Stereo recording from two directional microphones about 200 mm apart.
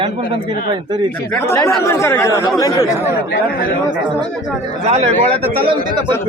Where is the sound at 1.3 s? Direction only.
10° left (ahead or behind).